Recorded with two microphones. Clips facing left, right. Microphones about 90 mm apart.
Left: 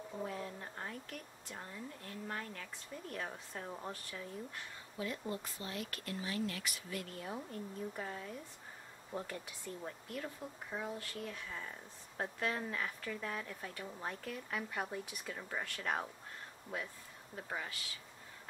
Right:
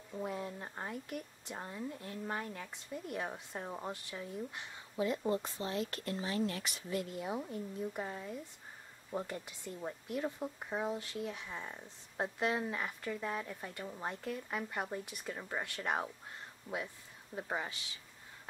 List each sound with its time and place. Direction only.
0.2 s speech: 15° right (ahead or behind)
16.7 s speech: 15° left (ahead or behind)
17.4 s speech: 25° right (ahead or behind)